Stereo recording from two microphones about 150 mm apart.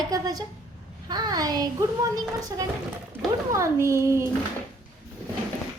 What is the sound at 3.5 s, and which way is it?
Speech, 20° right (ahead or behind).